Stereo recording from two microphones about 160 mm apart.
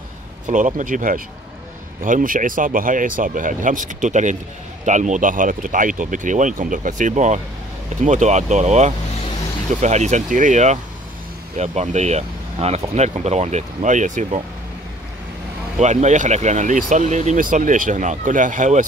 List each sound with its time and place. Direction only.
0.5 s speech: 50° right (ahead or behind)
15.8 s speech: 45° right (ahead or behind)